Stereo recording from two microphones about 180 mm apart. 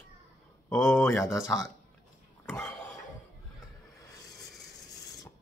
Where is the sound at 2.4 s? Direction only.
10° left (ahead or behind).